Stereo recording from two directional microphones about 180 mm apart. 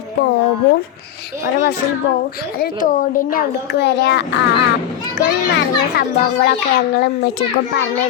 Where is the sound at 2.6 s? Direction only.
50° left (ahead or behind); by 4.4 s 75° left (ahead or behind).